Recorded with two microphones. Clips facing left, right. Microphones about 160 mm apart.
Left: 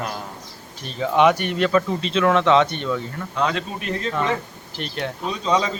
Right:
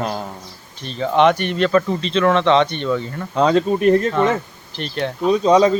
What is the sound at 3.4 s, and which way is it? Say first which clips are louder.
Speech: right 9 dB; 35° right (ahead or behind).